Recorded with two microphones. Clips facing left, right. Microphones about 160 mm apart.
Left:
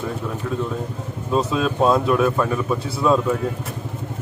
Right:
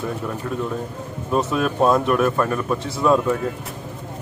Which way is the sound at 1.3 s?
10° right (ahead or behind).